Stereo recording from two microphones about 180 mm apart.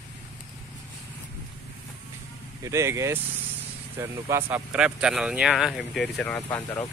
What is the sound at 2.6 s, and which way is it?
Speech, 15° right (ahead or behind).